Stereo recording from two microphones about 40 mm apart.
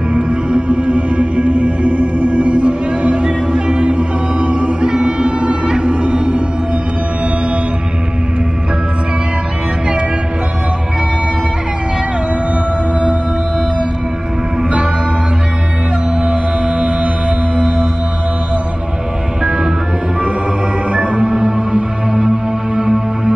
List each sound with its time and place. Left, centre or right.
0.1 s music: right
14.6 s music: right
16.3 s music: right
19.4 s music: right
20.9 s music: right